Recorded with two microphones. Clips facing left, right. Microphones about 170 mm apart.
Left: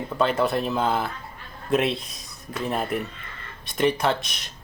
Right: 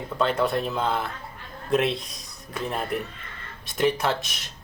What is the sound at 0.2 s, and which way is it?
Speech, centre (ahead or behind).